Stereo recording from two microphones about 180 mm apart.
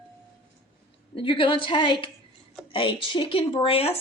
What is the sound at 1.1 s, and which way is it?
A woman's voice, 30° left (ahead or behind).